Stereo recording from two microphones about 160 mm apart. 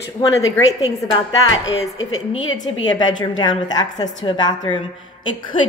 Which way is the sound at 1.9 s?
25° left (ahead or behind).